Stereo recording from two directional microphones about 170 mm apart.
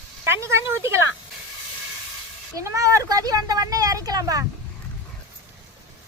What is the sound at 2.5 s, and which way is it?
Speech, 20° right (ahead or behind).